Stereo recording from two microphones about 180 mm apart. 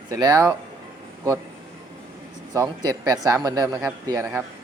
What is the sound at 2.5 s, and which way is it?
A man's voice, 20° right (ahead or behind).